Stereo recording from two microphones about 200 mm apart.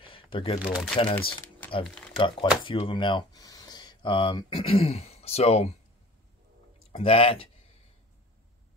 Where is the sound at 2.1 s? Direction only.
25° left (ahead or behind).